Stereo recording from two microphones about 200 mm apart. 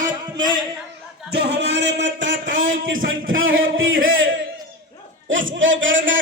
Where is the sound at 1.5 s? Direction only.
60° right (ahead or behind).